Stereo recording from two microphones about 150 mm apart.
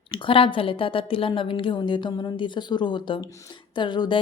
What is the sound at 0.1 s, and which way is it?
A woman's voice, 35° left (ahead or behind).